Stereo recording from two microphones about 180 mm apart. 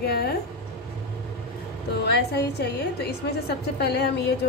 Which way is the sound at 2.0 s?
65° left (ahead or behind).